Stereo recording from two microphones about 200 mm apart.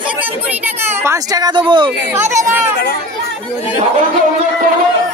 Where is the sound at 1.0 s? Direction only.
15° right (ahead or behind).